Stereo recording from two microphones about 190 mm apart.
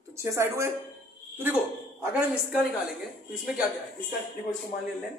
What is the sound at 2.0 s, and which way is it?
Speech, 10° right (ahead or behind).